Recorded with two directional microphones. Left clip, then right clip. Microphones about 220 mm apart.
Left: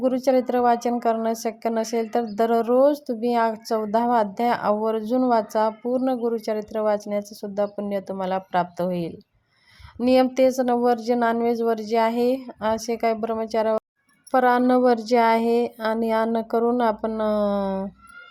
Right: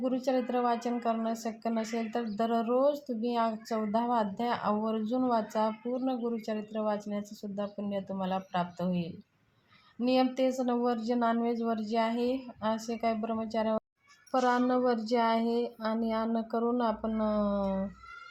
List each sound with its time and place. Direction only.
0.0 s a woman's voice: 45° left (ahead or behind)